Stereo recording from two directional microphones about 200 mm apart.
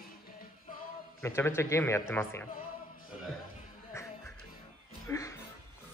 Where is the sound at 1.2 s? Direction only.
10° left (ahead or behind).